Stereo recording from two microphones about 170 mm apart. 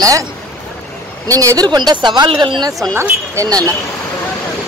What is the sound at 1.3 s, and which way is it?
Speech, 20° right (ahead or behind).